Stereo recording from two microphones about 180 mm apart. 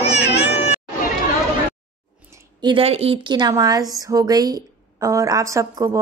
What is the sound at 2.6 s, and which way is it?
A woman's voice, 30° right (ahead or behind).